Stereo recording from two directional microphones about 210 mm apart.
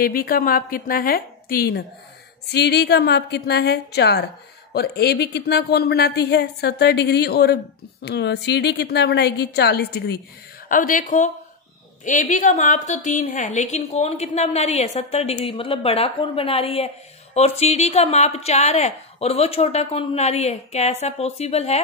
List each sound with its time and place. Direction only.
0.0 s a woman's voice: 45° left (ahead or behind)
10.7 s a woman's voice: 40° left (ahead or behind)